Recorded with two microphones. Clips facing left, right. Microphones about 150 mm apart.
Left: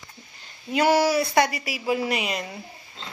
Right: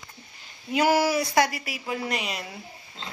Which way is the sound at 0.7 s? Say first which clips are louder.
Left 2 dB; 10° right (ahead or behind).